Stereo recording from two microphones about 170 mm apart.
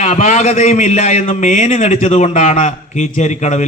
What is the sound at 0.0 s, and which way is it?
A man's voice, 45° left (ahead or behind).